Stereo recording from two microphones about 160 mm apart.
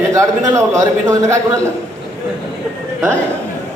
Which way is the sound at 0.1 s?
20° right (ahead or behind).